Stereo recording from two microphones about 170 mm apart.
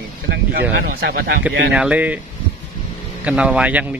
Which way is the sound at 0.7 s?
65° right (ahead or behind).